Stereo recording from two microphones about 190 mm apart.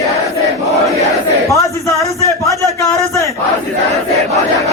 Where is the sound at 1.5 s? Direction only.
15° left (ahead or behind).